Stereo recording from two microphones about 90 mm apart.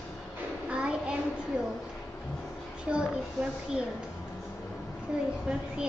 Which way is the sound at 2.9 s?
10° right (ahead or behind).